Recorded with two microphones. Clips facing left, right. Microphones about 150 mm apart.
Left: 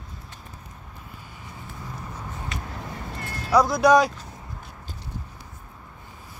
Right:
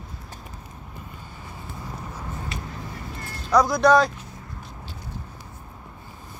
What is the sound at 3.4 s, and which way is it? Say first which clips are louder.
Speech: even; 5° left (ahead or behind).